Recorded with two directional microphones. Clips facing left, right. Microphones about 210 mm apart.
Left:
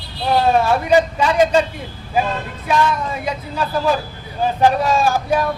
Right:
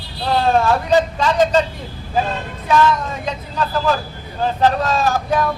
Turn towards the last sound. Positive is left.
turn(degrees=10)  # may be behind; listen again after turning